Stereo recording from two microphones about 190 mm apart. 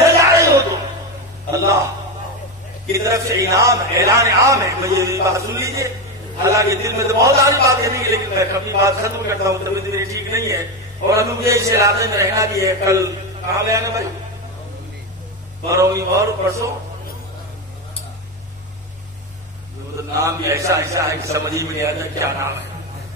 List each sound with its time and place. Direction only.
0.0 s a sound: 15° right (ahead or behind)
2.9 s a man's voice: 15° right (ahead or behind)
15.7 s a man's voice: 15° right (ahead or behind)
20.0 s a man's voice: 15° right (ahead or behind)